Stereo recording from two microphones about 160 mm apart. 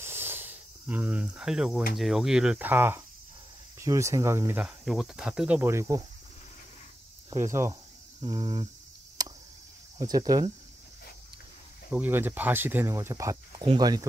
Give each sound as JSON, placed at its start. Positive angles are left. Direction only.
{"t": 0.0, "sound": "cricket", "side_deg": -15}
{"t": 2.0, "sound": "speech", "side_deg": 0}
{"t": 4.6, "sound": "speech", "side_deg": 0}
{"t": 5.6, "sound": "speech", "side_deg": -15}
{"t": 7.4, "sound": "speech", "side_deg": -15}
{"t": 9.2, "sound": "a sound", "side_deg": -25}
{"t": 9.9, "sound": "speech", "side_deg": -25}
{"t": 11.9, "sound": "speech", "side_deg": -10}